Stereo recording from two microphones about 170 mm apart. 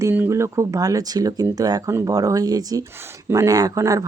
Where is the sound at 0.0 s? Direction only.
15° right (ahead or behind).